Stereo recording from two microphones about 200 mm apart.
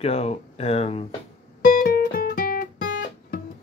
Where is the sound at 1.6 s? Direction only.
45° left (ahead or behind).